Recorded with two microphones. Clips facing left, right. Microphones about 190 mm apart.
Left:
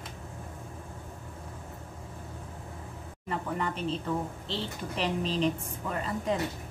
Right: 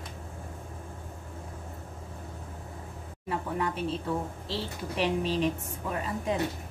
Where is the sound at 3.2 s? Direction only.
10° right (ahead or behind).